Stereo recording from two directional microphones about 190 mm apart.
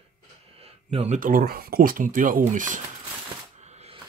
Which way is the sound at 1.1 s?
50° right (ahead or behind).